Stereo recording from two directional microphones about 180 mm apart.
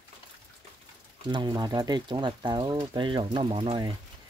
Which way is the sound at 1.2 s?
25° right (ahead or behind).